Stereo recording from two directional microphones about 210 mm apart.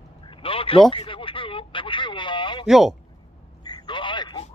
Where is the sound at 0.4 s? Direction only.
25° left (ahead or behind).